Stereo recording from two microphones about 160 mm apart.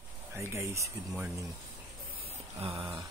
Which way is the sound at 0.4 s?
15° right (ahead or behind).